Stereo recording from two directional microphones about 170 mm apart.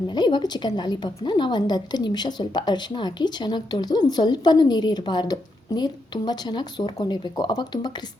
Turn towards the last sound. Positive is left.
turn(degrees=25)  # may be behind; listen again after turning